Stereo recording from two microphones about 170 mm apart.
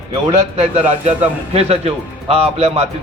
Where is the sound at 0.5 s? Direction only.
40° right (ahead or behind).